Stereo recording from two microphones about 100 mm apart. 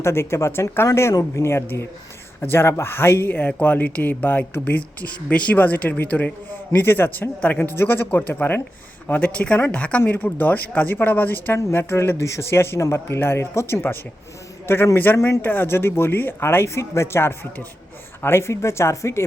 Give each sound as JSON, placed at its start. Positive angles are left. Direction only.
{"t": 0.0, "sound": "speech", "side_deg": 25}